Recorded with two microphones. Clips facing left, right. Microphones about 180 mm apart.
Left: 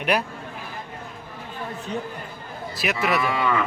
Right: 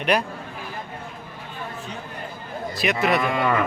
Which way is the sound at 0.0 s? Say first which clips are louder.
Right 1 dB; 5° left (ahead or behind).